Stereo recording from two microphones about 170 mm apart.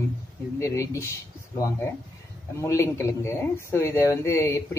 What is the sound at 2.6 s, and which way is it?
Speech, 15° left (ahead or behind).